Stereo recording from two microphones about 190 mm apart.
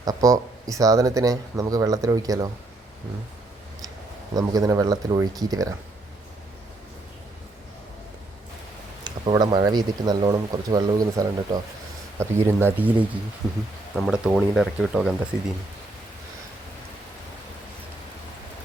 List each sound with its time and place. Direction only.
0.0 s speech: 20° right (ahead or behind)
4.4 s speech: 20° right (ahead or behind)
9.0 s speech: 25° right (ahead or behind); by 15.5 s 5° right (ahead or behind)